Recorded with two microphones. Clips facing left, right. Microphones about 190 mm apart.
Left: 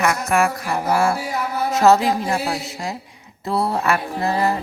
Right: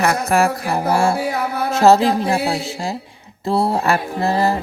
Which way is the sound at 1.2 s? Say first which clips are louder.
Right 3 dB; 60° right (ahead or behind).